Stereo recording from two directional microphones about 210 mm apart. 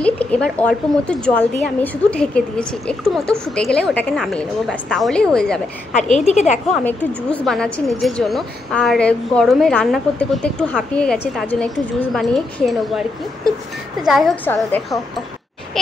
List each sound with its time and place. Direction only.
0.0 s a woman's voice: 5° left (ahead or behind)
6.2 s a woman's voice: 35° left (ahead or behind)
6.8 s a woman's voice: 5° left (ahead or behind)
14.0 s a woman's voice: centre (ahead or behind)